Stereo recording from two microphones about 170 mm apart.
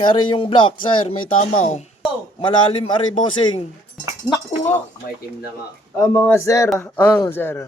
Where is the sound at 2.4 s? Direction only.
30° left (ahead or behind).